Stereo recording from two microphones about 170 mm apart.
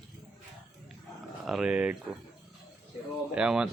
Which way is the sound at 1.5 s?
5° right (ahead or behind).